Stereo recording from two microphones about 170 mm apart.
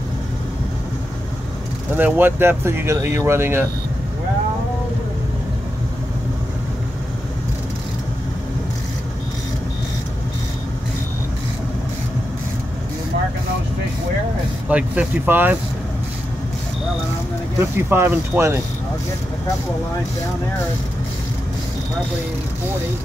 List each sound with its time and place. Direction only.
2.0 s speech: 10° right (ahead or behind)
14.7 s speech: 10° right (ahead or behind)
17.6 s speech: 15° right (ahead or behind)